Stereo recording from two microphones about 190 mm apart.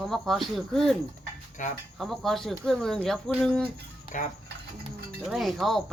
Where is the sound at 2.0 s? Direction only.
Centre (ahead or behind).